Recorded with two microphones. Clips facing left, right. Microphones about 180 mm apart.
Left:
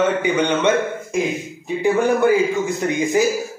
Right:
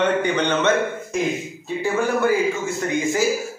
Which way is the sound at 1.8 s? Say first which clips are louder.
Left 4 dB; 20° left (ahead or behind).